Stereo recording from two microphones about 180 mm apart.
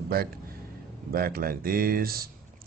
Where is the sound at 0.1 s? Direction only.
55° right (ahead or behind).